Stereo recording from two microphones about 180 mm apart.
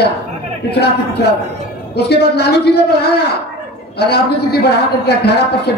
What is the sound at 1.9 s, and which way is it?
Speech, 65° left (ahead or behind).